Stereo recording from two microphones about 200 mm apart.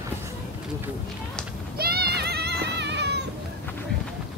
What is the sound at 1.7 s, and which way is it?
Music, 50° right (ahead or behind).